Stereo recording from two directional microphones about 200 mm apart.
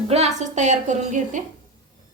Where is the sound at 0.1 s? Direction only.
35° right (ahead or behind).